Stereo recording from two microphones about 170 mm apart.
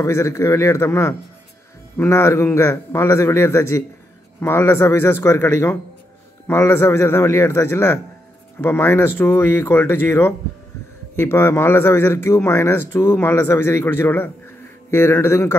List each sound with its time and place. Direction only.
0.0 s a man's voice: 15° left (ahead or behind)